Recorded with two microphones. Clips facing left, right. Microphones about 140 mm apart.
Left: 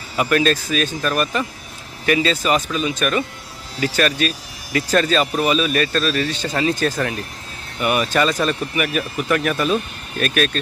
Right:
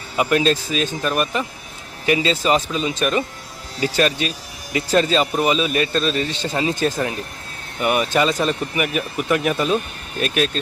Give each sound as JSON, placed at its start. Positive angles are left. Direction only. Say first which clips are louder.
{"t": 0.2, "sound": "speech", "louder": "even", "side_deg": -20}